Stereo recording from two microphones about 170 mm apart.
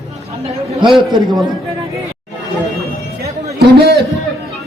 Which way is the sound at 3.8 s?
70° right (ahead or behind).